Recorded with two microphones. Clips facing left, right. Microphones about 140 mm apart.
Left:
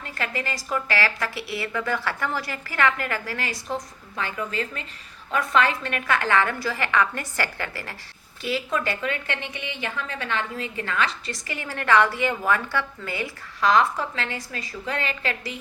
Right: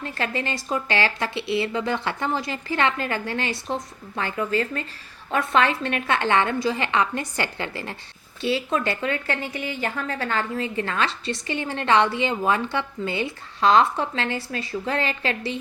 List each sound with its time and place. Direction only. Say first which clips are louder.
0.0 s speech: right 3 dB; 30° right (ahead or behind)